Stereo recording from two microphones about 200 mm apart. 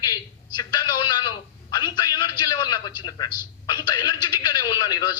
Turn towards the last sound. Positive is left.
turn(degrees=20)  # may be behind; listen again after turning